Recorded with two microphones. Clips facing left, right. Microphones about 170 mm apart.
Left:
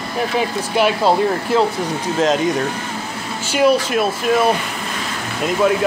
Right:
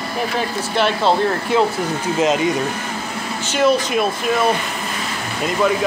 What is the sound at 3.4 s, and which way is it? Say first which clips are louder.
Speech: left 2 dB; 10° left (ahead or behind).